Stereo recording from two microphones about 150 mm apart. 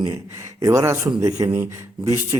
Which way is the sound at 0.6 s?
20° right (ahead or behind).